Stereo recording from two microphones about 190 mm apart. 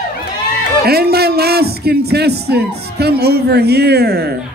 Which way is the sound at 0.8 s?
55° right (ahead or behind).